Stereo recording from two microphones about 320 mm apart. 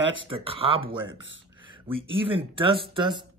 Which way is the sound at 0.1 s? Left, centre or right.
Centre.